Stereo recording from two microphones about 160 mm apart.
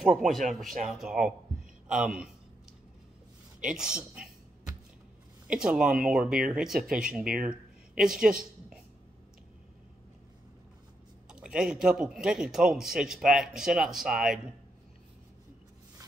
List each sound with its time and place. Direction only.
0.0 s a man's voice: centre (ahead or behind)
3.6 s a man's voice: 5° right (ahead or behind)
5.5 s a man's voice: 5° right (ahead or behind)
6.8 s speech: 60° right (ahead or behind)
7.4 s speech: 5° right (ahead or behind)
11.2 s a man's voice: 5° right (ahead or behind)